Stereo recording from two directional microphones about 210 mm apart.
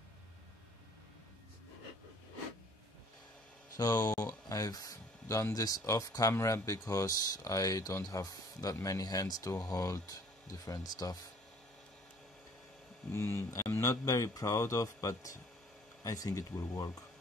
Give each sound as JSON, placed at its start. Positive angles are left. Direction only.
{"t": 3.7, "sound": "speech", "side_deg": 20}
{"t": 13.1, "sound": "speech", "side_deg": 10}